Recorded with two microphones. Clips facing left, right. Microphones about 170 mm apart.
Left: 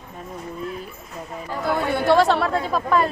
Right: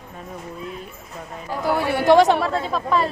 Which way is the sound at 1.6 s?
10° right (ahead or behind).